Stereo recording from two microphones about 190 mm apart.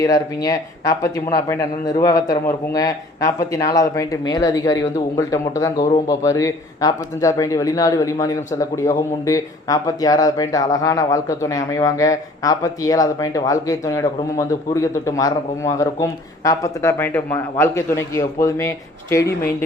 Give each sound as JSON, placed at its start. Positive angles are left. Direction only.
{"t": 0.0, "sound": "speech", "side_deg": 20}